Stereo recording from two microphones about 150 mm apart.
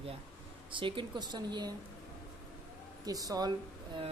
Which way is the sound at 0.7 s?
35° right (ahead or behind).